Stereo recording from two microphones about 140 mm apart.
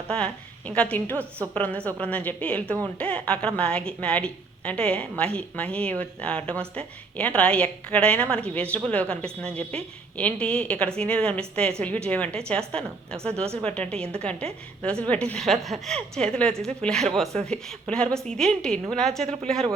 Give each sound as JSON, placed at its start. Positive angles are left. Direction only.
{"t": 0.1, "sound": "a woman's voice", "side_deg": 5}